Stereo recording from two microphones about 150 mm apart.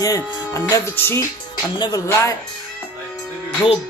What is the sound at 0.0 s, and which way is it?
Music, 20° left (ahead or behind).